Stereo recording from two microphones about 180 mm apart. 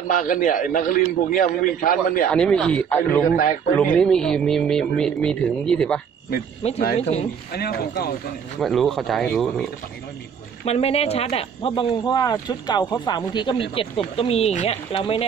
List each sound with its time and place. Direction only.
0.1 s a man's voice: 45° left (ahead or behind)
2.3 s speech: 5° left (ahead or behind)
6.6 s speech: 35° left (ahead or behind)
7.5 s speech: 60° left (ahead or behind)
8.5 s speech: centre (ahead or behind)
10.6 s speech: 35° left (ahead or behind)
12.0 s speech: 20° left (ahead or behind)